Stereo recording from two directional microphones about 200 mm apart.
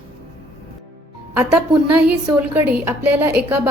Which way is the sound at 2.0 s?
5° right (ahead or behind).